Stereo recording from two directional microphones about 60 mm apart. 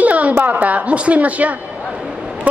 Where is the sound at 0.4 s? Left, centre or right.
Right.